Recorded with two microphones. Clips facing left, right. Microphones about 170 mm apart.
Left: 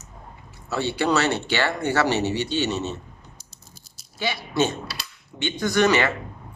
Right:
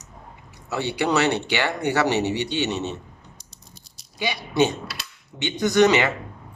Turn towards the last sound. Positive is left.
turn(degrees=-20)  # may be behind; listen again after turning